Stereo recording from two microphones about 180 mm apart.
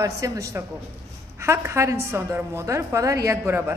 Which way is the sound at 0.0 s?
15° right (ahead or behind).